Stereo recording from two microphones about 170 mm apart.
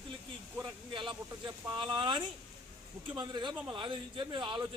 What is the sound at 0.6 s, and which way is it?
A man's voice, 25° right (ahead or behind).